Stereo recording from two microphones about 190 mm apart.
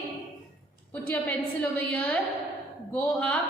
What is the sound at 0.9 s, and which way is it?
A woman's voice, 5° left (ahead or behind).